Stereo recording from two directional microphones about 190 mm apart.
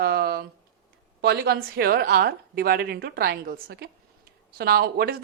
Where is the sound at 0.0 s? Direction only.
55° right (ahead or behind).